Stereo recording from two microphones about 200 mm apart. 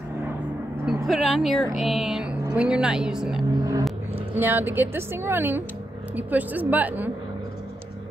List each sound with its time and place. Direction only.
1.0 s speech: centre (ahead or behind)
3.5 s a sound: 15° right (ahead or behind)
4.4 s speech: 10° right (ahead or behind)